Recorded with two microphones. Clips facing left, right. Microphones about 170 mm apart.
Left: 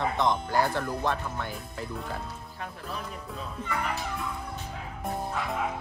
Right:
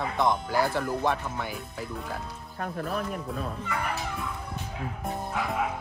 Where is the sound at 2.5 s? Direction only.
60° right (ahead or behind).